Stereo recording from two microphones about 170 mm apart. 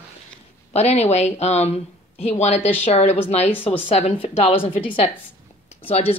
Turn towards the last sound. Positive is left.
turn(degrees=35)  # may be behind; listen again after turning